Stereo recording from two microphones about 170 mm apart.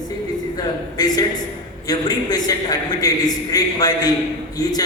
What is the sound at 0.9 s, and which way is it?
A man's voice, 25° left (ahead or behind).